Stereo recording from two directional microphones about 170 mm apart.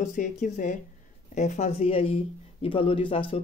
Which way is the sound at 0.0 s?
45° left (ahead or behind).